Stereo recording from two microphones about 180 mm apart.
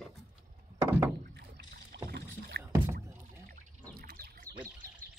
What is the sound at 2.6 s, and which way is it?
Rowboat, 15° right (ahead or behind).